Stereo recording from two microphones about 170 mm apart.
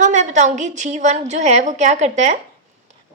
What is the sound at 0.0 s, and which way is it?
A woman's voice, 45° right (ahead or behind).